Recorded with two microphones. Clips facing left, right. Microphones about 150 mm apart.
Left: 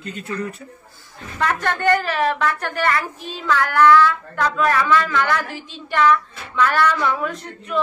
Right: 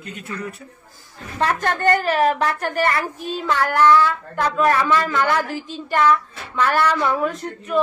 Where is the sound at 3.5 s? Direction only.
30° right (ahead or behind).